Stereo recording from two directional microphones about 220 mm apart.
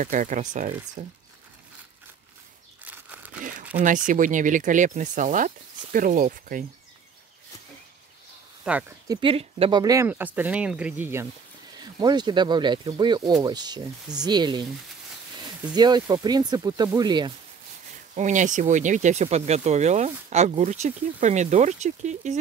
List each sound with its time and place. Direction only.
0.0 s speech: 35° right (ahead or behind)
2.8 s a sound: 5° right (ahead or behind)
4.1 s speech: 35° right (ahead or behind)
8.6 s speech: 10° right (ahead or behind)
15.7 s speech: 20° right (ahead or behind)
18.1 s speech: 35° right (ahead or behind)